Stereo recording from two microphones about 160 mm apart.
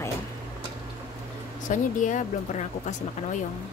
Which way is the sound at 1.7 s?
50° left (ahead or behind).